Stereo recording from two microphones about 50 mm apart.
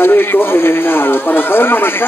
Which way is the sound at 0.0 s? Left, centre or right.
Left.